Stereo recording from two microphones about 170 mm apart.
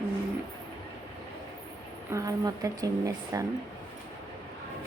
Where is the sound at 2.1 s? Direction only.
20° right (ahead or behind).